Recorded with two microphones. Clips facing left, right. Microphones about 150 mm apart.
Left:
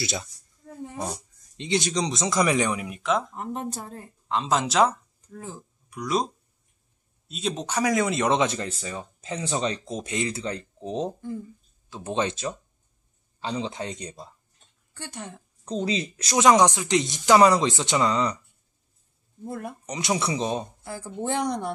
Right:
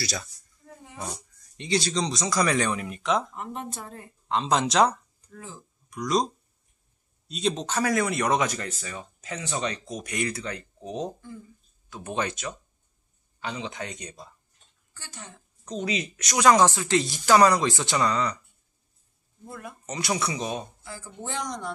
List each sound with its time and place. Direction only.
0.0 s speech: 20° left (ahead or behind)
1.6 s speech: 20° left (ahead or behind); by 3.3 s centre (ahead or behind)
3.3 s speech: 35° left (ahead or behind)
4.3 s speech: centre (ahead or behind); by 14.3 s 30° left (ahead or behind)
15.0 s a woman's voice: 60° left (ahead or behind)
15.6 s speech: 30° left (ahead or behind)
16.4 s speech: 20° left (ahead or behind)
19.4 s speech: 50° left (ahead or behind)
19.9 s speech: 25° left (ahead or behind)
21.2 s a woman's voice: 55° left (ahead or behind)